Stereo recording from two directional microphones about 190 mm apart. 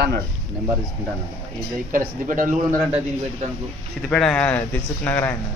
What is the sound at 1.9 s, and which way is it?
A man's voice, 45° right (ahead or behind).